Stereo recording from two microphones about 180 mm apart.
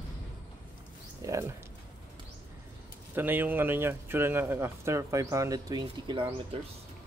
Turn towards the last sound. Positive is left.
turn(degrees=-25)  # may be behind; listen again after turning